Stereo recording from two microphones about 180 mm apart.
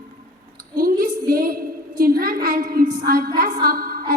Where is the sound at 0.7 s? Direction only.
55° right (ahead or behind).